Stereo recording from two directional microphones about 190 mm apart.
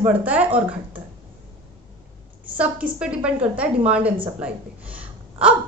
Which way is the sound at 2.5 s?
5° right (ahead or behind).